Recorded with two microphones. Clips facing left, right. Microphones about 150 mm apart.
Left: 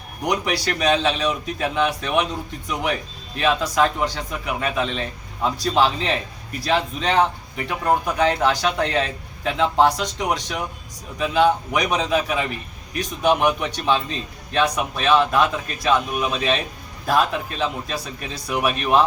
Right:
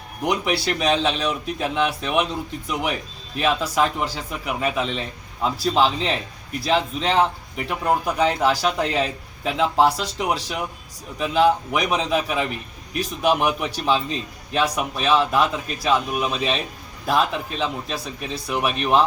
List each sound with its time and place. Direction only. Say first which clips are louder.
0.2 s a man's voice: even; centre (ahead or behind)